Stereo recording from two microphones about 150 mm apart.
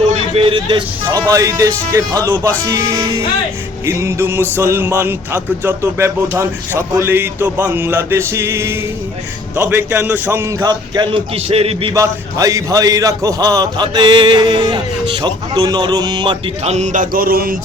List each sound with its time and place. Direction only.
0.3 s speech: 35° right (ahead or behind)
1.3 s a man's voice: 20° right (ahead or behind); by 11.9 s 40° right (ahead or behind)
11.9 s a man's voice: 20° right (ahead or behind)
16.6 s mantra: 50° right (ahead or behind); by 17.6 s 80° right